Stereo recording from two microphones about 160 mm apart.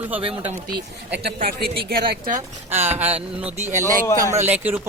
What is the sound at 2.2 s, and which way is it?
Speech, 45° right (ahead or behind).